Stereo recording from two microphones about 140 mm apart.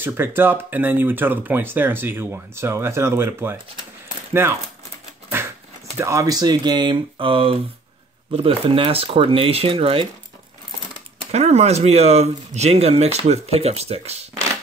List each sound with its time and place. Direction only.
0.0 s speech: 15° right (ahead or behind)
5.9 s speech: 20° right (ahead or behind); by 10.0 s 40° right (ahead or behind)
11.3 s speech: 50° right (ahead or behind)